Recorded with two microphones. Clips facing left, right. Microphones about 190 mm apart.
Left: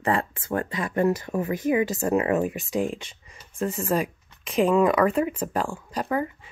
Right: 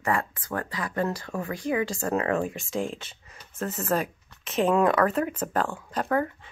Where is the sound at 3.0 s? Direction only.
10° left (ahead or behind).